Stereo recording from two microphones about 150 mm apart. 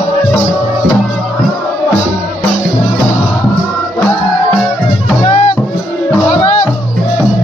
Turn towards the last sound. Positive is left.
turn(degrees=45)  # may be behind; listen again after turning